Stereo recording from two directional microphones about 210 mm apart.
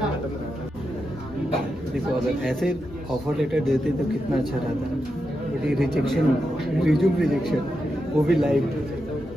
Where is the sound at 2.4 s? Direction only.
Centre (ahead or behind).